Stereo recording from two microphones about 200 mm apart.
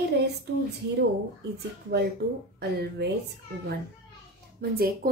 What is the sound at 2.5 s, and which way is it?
Speech, 60° right (ahead or behind).